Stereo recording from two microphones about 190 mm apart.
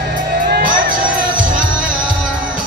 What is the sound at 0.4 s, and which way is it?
Music, 50° right (ahead or behind).